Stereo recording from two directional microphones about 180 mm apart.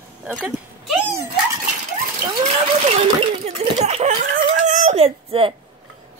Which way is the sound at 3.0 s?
35° right (ahead or behind).